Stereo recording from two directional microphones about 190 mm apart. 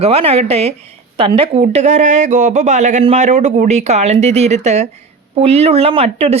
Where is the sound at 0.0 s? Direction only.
30° right (ahead or behind).